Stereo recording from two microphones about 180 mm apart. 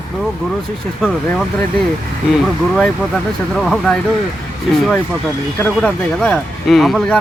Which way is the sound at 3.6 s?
Centre (ahead or behind).